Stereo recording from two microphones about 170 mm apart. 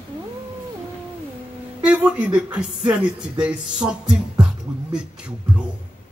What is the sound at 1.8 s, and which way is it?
Speech, 5° right (ahead or behind).